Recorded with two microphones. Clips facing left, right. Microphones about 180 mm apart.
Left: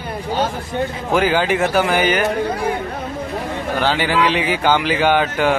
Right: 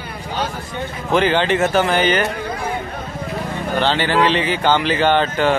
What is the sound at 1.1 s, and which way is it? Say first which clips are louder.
Speech: right 1 dB; 5° left (ahead or behind).